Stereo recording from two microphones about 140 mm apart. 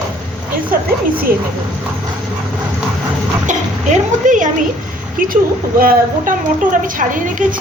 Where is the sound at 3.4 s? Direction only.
65° right (ahead or behind).